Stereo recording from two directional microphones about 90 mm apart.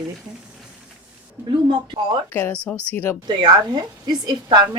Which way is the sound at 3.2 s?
55° right (ahead or behind).